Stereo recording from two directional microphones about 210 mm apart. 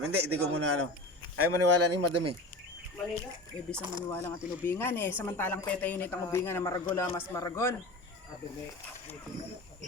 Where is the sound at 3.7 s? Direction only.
20° right (ahead or behind).